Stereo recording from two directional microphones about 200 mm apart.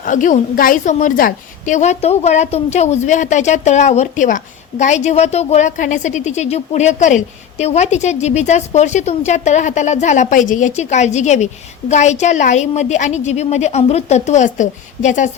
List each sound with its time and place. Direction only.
0.0 s a woman's voice: 40° left (ahead or behind)